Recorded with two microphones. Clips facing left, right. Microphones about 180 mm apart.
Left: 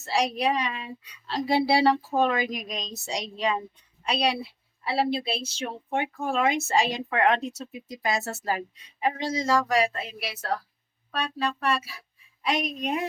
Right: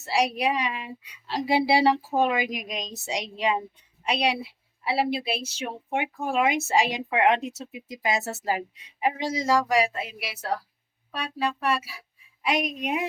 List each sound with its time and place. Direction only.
0.0 s speech: 10° right (ahead or behind)
4.8 s speech: 10° right (ahead or behind)